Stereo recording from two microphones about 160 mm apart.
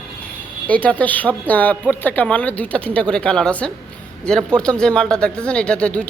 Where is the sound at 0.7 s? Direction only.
10° left (ahead or behind).